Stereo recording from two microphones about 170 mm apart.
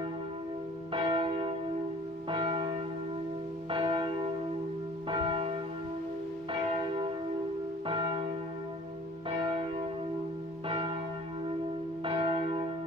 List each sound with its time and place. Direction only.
0.9 s church bell: 30° right (ahead or behind)
3.7 s church bell: 30° right (ahead or behind)
6.7 s church bell: 30° right (ahead or behind)
9.4 s church bell: 30° right (ahead or behind)
12.0 s church bell: 30° right (ahead or behind)